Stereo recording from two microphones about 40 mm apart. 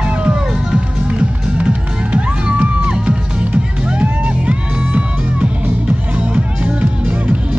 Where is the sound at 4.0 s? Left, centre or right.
Right.